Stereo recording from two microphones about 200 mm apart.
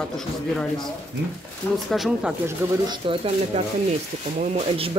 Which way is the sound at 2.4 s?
20° right (ahead or behind).